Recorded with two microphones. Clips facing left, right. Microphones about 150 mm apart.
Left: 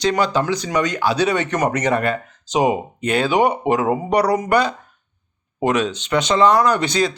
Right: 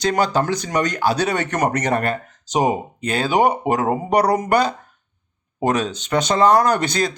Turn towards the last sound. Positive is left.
turn(degrees=-45)  # may be behind; listen again after turning